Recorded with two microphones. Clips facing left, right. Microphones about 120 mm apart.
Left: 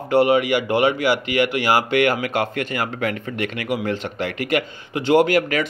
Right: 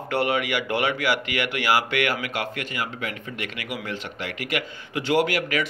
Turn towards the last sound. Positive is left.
turn(degrees=40)  # may be behind; listen again after turning